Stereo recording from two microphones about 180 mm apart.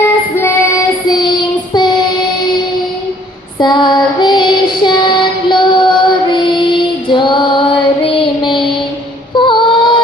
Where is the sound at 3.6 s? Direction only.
25° left (ahead or behind).